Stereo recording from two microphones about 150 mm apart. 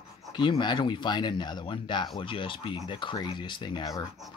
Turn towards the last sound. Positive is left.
turn(degrees=25)  # may be behind; listen again after turning